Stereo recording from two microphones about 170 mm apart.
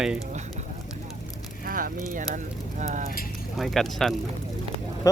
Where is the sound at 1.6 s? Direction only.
55° right (ahead or behind).